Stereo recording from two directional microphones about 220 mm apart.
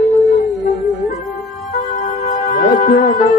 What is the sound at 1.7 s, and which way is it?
Music, 30° left (ahead or behind).